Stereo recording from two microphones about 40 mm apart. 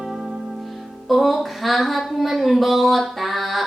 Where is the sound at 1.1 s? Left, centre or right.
Centre.